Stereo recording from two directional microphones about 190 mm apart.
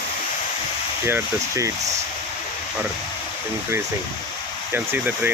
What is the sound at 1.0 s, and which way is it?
Speech, 15° right (ahead or behind).